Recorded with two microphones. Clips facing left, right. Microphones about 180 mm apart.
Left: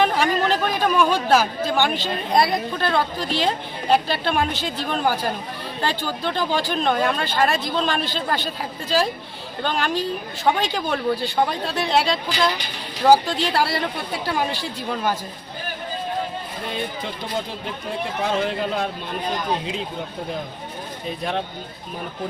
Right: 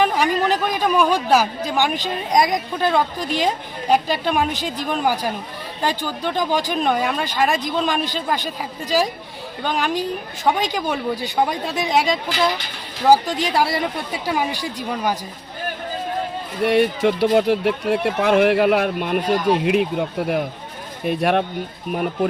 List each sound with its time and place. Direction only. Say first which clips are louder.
0.0 s a woman's voice: right 1 dB; 5° right (ahead or behind)
16.6 s a man's voice: right 14 dB; 75° right (ahead or behind)